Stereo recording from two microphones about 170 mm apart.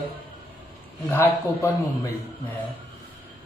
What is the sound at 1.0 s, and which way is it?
Speech, 10° left (ahead or behind).